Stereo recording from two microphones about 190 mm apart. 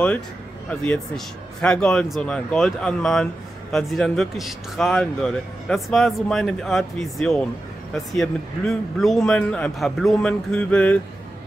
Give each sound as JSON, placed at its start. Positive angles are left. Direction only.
{"t": 0.7, "sound": "speech", "side_deg": 5}